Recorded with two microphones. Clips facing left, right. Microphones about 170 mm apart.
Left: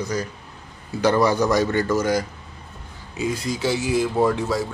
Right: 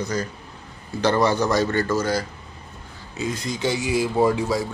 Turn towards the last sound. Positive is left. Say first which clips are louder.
# even
turn(degrees=-5)  # may be behind; listen again after turning